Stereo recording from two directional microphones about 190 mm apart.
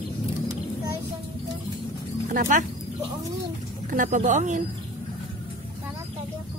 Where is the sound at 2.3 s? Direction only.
45° right (ahead or behind).